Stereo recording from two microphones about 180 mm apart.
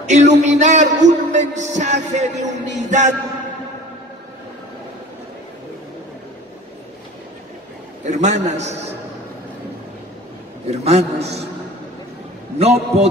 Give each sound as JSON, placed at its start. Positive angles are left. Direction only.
{"t": 0.0, "sound": "music", "side_deg": -40}
{"t": 8.0, "sound": "a man's voice", "side_deg": -40}
{"t": 8.5, "sound": "music", "side_deg": -40}
{"t": 10.7, "sound": "music", "side_deg": -35}
{"t": 12.5, "sound": "music", "side_deg": -35}